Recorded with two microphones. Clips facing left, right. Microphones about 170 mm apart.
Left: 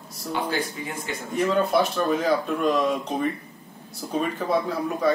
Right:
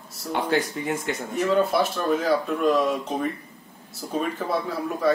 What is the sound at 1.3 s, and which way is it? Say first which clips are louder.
Speech: even; 5° right (ahead or behind).